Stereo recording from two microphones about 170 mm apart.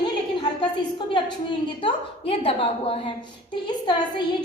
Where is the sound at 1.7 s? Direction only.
30° left (ahead or behind).